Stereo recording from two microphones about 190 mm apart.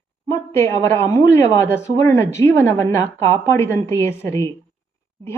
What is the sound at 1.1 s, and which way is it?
A woman's voice, 15° left (ahead or behind).